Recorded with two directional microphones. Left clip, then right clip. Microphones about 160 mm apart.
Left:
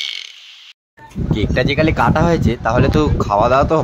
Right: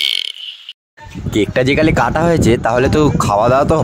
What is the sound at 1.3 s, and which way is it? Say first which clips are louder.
Speech: right 4 dB; 50° right (ahead or behind).